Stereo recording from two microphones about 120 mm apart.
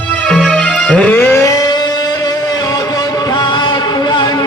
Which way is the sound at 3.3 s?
35° left (ahead or behind).